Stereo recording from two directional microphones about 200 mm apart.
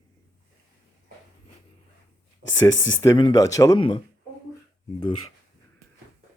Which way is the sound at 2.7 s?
70° left (ahead or behind).